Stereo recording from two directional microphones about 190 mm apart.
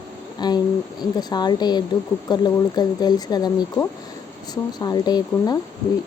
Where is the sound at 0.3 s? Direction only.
20° left (ahead or behind).